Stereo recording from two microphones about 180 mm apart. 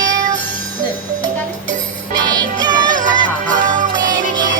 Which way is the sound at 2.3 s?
20° right (ahead or behind).